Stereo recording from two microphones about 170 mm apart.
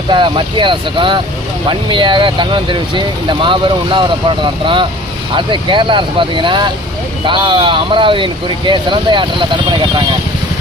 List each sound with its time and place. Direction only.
0.1 s speech: 30° right (ahead or behind)
5.3 s speech: 30° right (ahead or behind)